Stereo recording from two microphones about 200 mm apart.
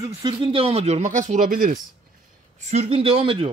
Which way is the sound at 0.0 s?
25° right (ahead or behind).